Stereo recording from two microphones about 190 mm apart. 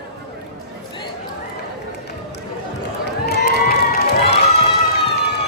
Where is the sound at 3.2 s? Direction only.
55° left (ahead or behind).